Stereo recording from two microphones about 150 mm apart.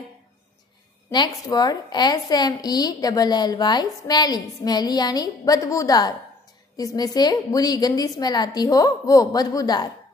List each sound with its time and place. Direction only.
1.1 s a woman's voice: 30° left (ahead or behind)